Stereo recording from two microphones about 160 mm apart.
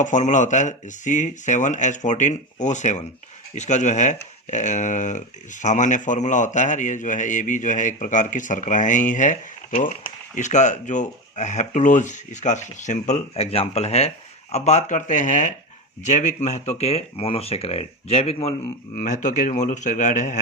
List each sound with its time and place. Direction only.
0.0 s a man's voice: 50° left (ahead or behind)
18.9 s a man's voice: 50° left (ahead or behind)